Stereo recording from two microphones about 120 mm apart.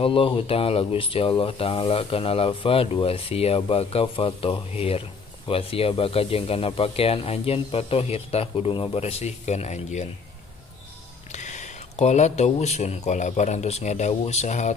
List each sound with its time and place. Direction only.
0.0 s speech: 50° left (ahead or behind); by 10.0 s 75° left (ahead or behind)
11.3 s speech: 80° left